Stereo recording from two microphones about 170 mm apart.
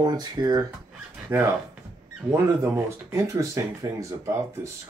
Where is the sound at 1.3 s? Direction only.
10° right (ahead or behind).